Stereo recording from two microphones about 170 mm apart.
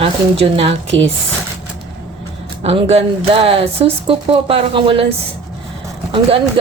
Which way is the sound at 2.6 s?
35° right (ahead or behind).